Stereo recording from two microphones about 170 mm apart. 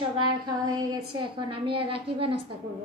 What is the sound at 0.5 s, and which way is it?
A woman's voice, 25° right (ahead or behind).